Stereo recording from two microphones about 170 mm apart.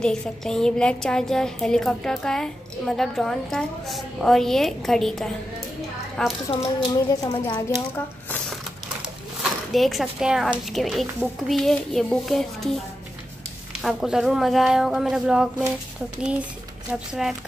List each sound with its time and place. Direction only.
0.0 s a woman's voice: 5° left (ahead or behind)
6.5 s speech: 25° left (ahead or behind)
9.4 s a woman's voice: centre (ahead or behind)
13.8 s a woman's voice: 5° right (ahead or behind)